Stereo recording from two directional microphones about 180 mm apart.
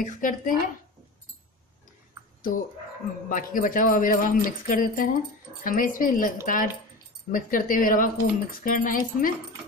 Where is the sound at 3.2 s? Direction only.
50° left (ahead or behind).